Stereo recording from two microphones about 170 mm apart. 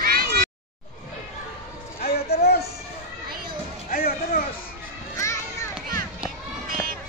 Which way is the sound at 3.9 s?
60° left (ahead or behind).